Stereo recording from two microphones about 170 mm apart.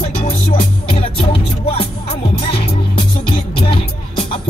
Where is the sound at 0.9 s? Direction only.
30° left (ahead or behind).